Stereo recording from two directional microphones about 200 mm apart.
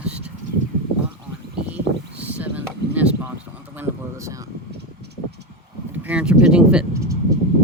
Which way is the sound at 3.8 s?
15° right (ahead or behind).